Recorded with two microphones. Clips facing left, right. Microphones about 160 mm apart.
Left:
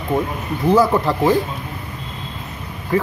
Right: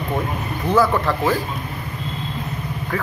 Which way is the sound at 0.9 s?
25° left (ahead or behind).